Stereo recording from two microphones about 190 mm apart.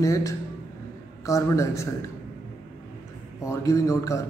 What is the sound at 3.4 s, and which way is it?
Speech, 15° left (ahead or behind).